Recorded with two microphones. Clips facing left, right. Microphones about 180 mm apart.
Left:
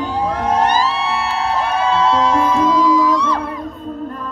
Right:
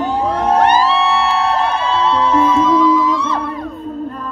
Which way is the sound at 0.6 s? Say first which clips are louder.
Right 4 dB; 60° right (ahead or behind).